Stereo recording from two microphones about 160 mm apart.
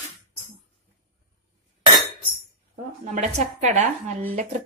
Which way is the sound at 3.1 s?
45° right (ahead or behind).